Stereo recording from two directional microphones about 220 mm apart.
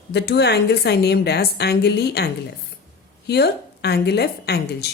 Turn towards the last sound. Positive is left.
turn(degrees=45)  # may be behind; listen again after turning